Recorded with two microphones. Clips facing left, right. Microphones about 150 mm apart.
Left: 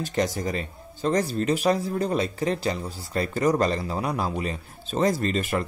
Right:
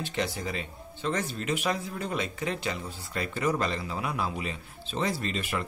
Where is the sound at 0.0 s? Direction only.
40° left (ahead or behind).